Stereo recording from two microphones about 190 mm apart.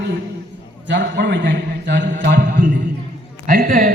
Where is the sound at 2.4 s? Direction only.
45° right (ahead or behind).